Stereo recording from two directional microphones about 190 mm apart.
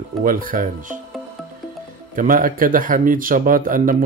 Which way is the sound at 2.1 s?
45° right (ahead or behind).